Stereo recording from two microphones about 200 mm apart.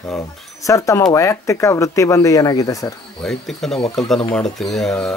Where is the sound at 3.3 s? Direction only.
Centre (ahead or behind).